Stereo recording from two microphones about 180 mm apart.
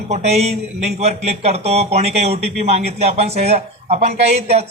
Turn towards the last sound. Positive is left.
turn(degrees=-35)  # may be behind; listen again after turning